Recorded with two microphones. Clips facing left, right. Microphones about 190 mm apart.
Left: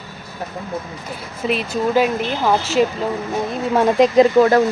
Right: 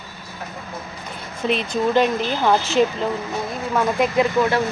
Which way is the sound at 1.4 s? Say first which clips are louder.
Left 1 dB; 5° left (ahead or behind).